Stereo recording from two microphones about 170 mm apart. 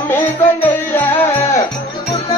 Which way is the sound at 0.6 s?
15° left (ahead or behind).